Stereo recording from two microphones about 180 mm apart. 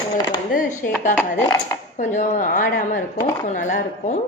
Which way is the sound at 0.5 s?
50° left (ahead or behind).